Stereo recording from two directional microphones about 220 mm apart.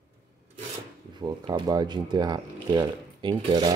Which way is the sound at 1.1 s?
20° right (ahead or behind).